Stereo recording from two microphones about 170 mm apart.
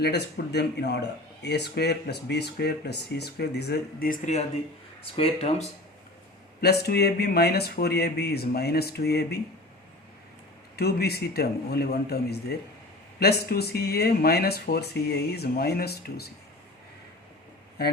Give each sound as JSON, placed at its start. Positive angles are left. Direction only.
{"t": 0.0, "sound": "speech", "side_deg": 75}
{"t": 5.1, "sound": "speech", "side_deg": 35}
{"t": 6.6, "sound": "speech", "side_deg": 70}
{"t": 10.8, "sound": "speech", "side_deg": 70}